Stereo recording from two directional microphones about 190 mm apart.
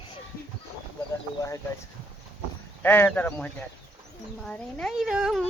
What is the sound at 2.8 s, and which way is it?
A man's voice, 10° left (ahead or behind).